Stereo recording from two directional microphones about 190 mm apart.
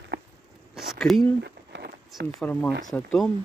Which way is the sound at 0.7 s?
Centre (ahead or behind).